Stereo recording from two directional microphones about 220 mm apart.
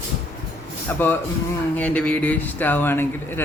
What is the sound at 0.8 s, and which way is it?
Speech, 10° left (ahead or behind).